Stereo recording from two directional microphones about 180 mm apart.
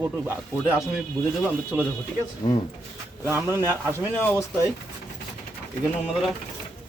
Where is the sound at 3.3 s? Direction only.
15° right (ahead or behind).